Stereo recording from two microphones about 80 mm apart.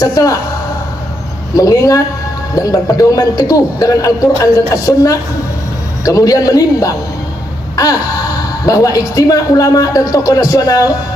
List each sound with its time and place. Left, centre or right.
0.0 s a woman's voice: left
1.5 s a woman's voice: left